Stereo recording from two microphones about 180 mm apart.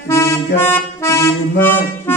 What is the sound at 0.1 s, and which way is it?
Music, 15° left (ahead or behind).